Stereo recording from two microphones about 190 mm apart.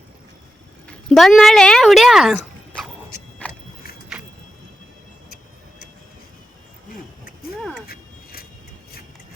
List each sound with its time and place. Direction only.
0.9 s speech: centre (ahead or behind)
3.4 s vehicle: 10° left (ahead or behind)
7.9 s a sound: 50° left (ahead or behind)